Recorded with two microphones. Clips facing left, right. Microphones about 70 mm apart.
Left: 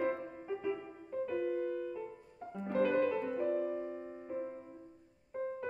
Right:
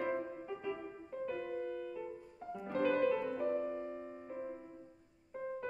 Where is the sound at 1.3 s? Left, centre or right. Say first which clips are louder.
Left 5 dB; centre.